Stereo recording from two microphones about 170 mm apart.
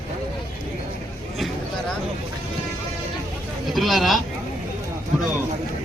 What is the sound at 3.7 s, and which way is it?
Speech, centre (ahead or behind).